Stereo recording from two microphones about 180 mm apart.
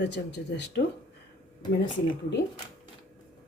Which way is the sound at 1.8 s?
90° left.